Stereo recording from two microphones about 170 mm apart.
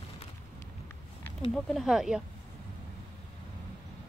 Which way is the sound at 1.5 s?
Centre (ahead or behind).